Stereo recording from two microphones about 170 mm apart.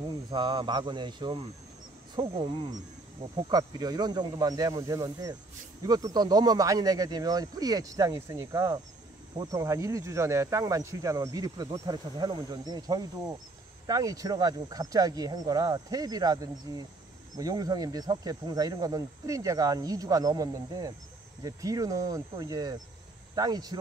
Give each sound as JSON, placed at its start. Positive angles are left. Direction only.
{"t": 0.3, "sound": "speech", "side_deg": -30}
{"t": 3.4, "sound": "speech", "side_deg": -25}